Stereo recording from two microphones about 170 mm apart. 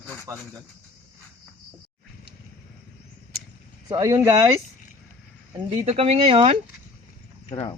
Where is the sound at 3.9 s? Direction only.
20° right (ahead or behind).